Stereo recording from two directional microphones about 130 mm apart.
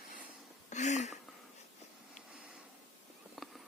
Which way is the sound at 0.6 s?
65° left (ahead or behind).